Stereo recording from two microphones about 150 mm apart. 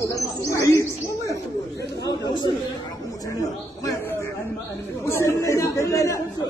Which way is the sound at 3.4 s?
20° left (ahead or behind).